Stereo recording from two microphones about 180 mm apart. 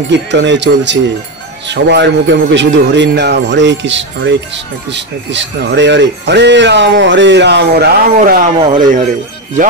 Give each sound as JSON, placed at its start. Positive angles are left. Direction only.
{"t": 0.3, "sound": "speech", "side_deg": -80}
{"t": 8.2, "sound": "speech", "side_deg": -50}
{"t": 8.5, "sound": "speech", "side_deg": -25}